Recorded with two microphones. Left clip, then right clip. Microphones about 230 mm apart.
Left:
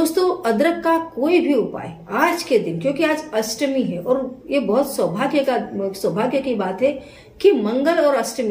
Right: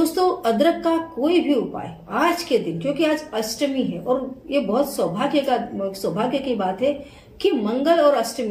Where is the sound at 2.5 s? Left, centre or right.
Centre.